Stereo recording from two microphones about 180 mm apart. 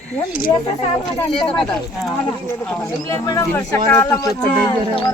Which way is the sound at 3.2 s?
20° left (ahead or behind).